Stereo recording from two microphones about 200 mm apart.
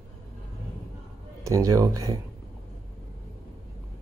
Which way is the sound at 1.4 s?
15° right (ahead or behind).